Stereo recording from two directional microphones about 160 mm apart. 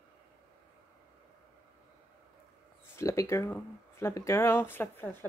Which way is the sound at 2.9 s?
20° left (ahead or behind).